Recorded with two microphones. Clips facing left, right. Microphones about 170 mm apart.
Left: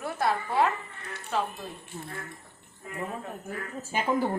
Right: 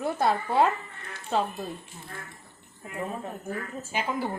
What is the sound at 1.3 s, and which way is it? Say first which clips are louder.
Speech: right 3 dB; 25° right (ahead or behind).